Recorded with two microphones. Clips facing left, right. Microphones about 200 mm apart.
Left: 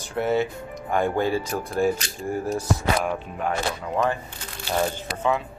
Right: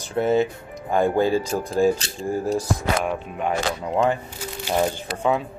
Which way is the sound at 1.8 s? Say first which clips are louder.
Right 3 dB; 30° right (ahead or behind).